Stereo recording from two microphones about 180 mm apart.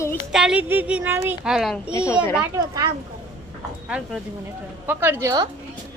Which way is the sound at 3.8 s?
5° right (ahead or behind).